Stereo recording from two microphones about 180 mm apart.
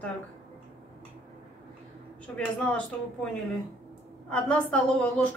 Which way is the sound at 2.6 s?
5° left (ahead or behind).